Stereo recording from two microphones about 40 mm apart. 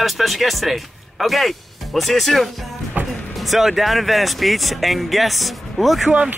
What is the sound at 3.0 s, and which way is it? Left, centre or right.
Music, right.